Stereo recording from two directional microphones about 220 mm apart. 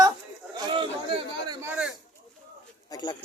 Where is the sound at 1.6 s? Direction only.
5° right (ahead or behind).